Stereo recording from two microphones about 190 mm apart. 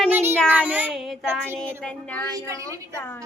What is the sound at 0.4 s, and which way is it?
Child singing, 10° right (ahead or behind).